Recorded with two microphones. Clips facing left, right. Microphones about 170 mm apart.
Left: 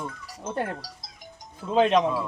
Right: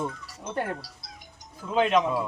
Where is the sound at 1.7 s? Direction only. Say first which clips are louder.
Left 2 dB; 30° left (ahead or behind).